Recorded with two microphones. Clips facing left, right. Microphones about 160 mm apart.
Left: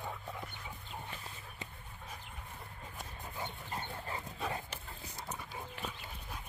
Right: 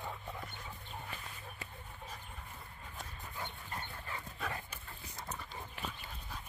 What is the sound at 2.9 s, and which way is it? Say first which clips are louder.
Dog: left 1 dB; 20° left (ahead or behind).